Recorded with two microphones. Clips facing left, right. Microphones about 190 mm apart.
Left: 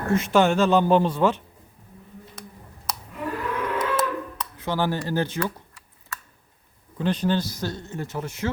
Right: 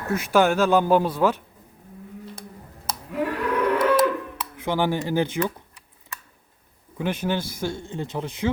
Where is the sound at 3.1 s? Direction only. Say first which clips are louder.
Right 5 dB; 75° right (ahead or behind).